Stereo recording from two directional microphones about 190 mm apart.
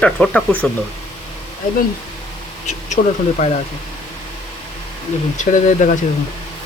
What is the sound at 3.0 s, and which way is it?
Speech, 45° left (ahead or behind).